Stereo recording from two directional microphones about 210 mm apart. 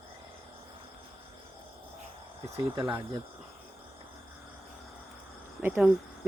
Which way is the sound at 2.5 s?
15° right (ahead or behind).